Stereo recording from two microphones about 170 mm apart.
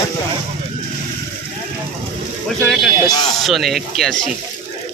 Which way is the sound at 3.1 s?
25° left (ahead or behind).